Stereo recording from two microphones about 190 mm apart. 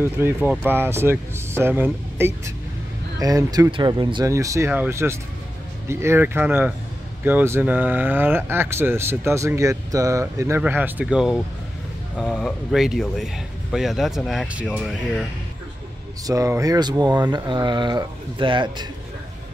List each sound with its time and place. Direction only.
0.0 s speech: 10° right (ahead or behind)
16.3 s speech: 15° right (ahead or behind)